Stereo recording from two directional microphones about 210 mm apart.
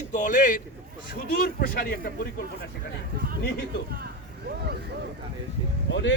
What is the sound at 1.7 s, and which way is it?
Speech, 45° left (ahead or behind).